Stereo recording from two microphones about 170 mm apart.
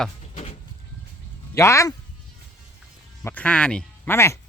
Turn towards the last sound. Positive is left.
turn(degrees=15)  # may be behind; listen again after turning